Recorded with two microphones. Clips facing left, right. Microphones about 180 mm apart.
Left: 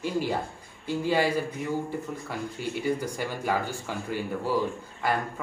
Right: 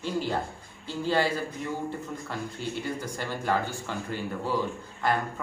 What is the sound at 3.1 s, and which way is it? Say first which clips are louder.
Speech: even; 10° left (ahead or behind).